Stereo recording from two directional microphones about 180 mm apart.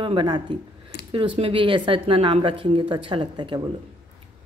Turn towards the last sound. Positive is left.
turn(degrees=-25)  # may be behind; listen again after turning